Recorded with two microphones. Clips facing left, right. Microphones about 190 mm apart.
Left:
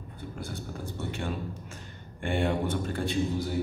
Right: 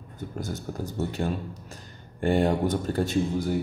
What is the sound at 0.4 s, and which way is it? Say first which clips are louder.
Speech: right 6 dB; 40° right (ahead or behind).